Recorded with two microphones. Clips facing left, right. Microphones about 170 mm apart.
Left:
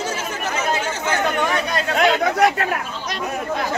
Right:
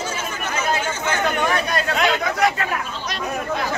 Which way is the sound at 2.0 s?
50° left (ahead or behind).